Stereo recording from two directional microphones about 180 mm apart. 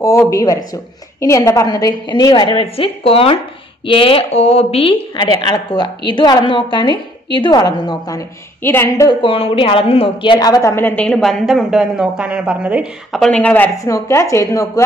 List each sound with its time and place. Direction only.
0.3 s a woman's voice: 20° left (ahead or behind)
9.2 s a woman's voice: 30° left (ahead or behind)